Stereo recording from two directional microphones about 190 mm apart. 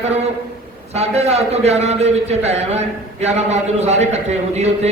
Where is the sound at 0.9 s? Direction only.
35° right (ahead or behind).